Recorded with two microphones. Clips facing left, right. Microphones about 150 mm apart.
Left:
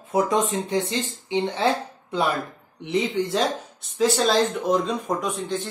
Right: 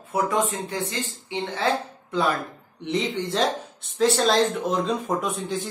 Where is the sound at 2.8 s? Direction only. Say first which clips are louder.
Left 2 dB; centre (ahead or behind).